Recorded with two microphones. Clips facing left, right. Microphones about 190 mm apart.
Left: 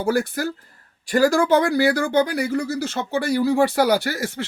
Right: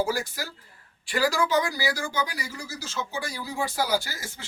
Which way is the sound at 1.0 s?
45° left (ahead or behind).